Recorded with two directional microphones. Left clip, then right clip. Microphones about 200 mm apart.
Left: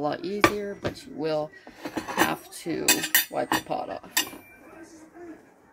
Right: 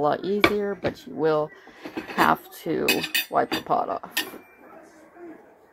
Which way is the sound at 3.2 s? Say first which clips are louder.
Right 4 dB; 20° right (ahead or behind).